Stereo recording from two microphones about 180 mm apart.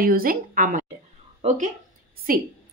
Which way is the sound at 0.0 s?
50° right (ahead or behind).